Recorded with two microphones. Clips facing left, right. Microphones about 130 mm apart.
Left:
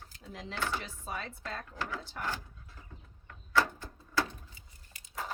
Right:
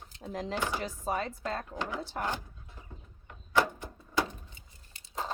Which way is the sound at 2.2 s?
20° right (ahead or behind).